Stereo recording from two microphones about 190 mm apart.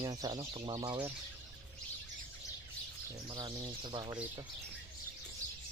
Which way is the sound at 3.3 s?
25° right (ahead or behind).